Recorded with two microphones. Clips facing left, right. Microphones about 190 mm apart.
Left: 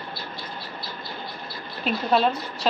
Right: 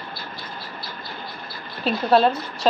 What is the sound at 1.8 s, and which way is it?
Speech, 35° right (ahead or behind).